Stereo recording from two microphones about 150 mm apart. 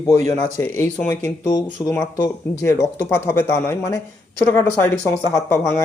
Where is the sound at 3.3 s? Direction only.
15° left (ahead or behind).